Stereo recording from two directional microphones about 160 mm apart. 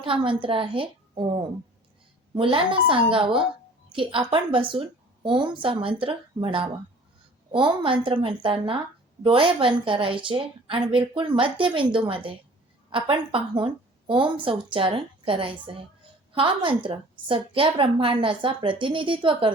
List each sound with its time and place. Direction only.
0.0 s a woman's voice: 35° right (ahead or behind)